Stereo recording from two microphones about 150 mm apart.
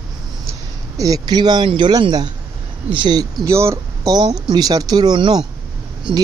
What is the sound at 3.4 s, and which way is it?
Speech, 20° right (ahead or behind).